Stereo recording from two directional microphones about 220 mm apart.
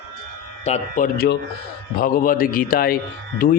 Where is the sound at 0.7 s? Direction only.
35° left (ahead or behind).